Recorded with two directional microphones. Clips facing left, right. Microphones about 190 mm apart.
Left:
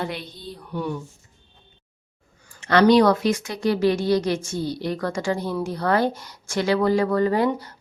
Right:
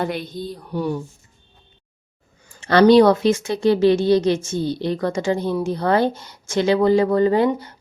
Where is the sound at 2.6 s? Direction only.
30° right (ahead or behind).